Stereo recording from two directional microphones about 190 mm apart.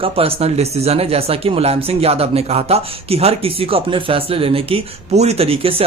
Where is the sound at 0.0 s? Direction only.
30° right (ahead or behind).